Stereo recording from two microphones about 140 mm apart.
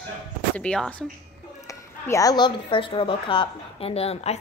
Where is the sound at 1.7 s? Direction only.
25° left (ahead or behind); by 4.4 s 45° left (ahead or behind).